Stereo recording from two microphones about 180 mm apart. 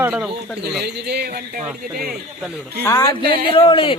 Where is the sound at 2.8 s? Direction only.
15° left (ahead or behind).